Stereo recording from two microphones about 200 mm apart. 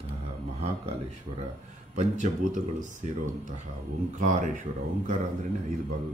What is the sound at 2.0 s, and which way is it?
A man's voice, 35° right (ahead or behind).